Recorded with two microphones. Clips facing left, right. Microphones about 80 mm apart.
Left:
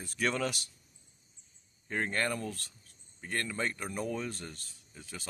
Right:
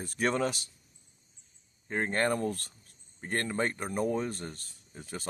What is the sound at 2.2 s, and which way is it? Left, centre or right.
Speech, right.